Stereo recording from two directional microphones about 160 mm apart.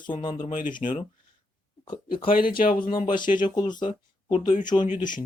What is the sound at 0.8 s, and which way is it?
Speech, 40° left (ahead or behind).